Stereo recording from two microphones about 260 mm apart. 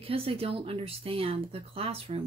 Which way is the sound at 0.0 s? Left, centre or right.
Right.